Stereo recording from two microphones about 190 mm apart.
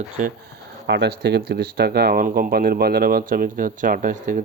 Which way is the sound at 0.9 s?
65° right (ahead or behind).